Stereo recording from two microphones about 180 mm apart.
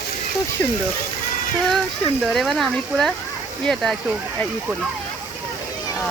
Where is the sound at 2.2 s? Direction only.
Centre (ahead or behind).